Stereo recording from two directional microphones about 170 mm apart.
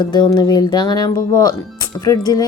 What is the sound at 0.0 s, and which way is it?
A woman's voice, 25° left (ahead or behind).